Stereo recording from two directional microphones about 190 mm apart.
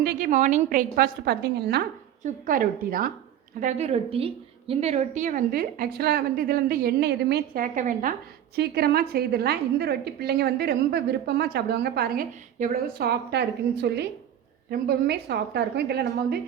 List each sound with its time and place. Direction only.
0.0 s a woman's voice: 50° right (ahead or behind)
2.2 s a woman's voice: 45° right (ahead or behind)
3.6 s a woman's voice: 35° right (ahead or behind)
8.5 s a woman's voice: 55° right (ahead or behind)